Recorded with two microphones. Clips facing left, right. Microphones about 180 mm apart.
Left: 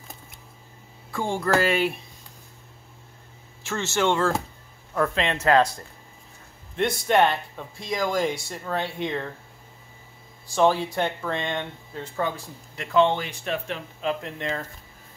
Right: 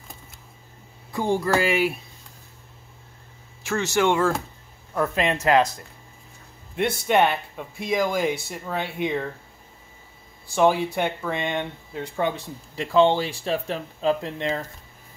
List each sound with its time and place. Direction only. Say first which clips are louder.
1.4 s speech: left 3 dB; 10° right (ahead or behind)
3.6 s speech: right 2 dB; 15° right (ahead or behind)
7.1 s speech: even; 10° right (ahead or behind)
10.5 s speech: right 1 dB; 15° right (ahead or behind)
12.7 s speech: right 2 dB; 30° right (ahead or behind)